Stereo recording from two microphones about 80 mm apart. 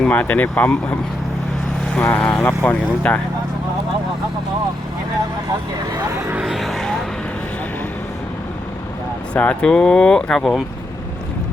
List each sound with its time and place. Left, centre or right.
0.0 s speech: left
2.0 s speech: left
3.1 s speech: centre
6.1 s speech: right
6.4 s speech: centre
9.3 s speech: centre